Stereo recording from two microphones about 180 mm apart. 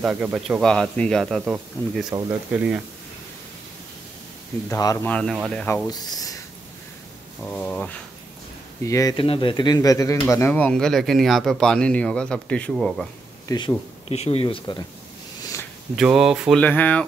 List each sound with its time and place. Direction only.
0.0 s speech: 5° right (ahead or behind)
4.6 s speech: 15° left (ahead or behind)
5.0 s speech: 5° left (ahead or behind)
5.9 s speech: 20° left (ahead or behind)
7.4 s speech: 5° left (ahead or behind)
8.8 s speech: 20° left (ahead or behind)
9.1 s speech: 30° left (ahead or behind); by 13.1 s centre (ahead or behind)
13.5 s speech: 25° left (ahead or behind)
16.0 s speech: 5° right (ahead or behind)
16.6 s speech: 10° left (ahead or behind)